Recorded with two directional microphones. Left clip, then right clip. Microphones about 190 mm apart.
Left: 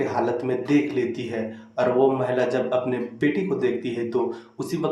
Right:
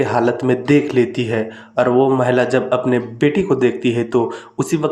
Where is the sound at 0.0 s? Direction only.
40° right (ahead or behind).